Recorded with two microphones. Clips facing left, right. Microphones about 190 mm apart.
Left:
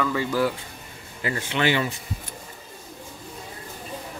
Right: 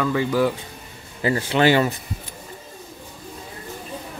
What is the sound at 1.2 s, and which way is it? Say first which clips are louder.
Speech: right 6 dB; 30° right (ahead or behind).